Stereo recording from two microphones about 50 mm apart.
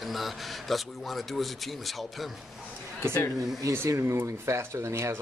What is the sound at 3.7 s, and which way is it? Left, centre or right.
Speech, right.